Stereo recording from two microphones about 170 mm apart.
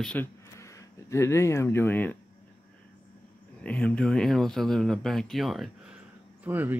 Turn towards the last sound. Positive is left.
turn(degrees=-10)  # may be behind; listen again after turning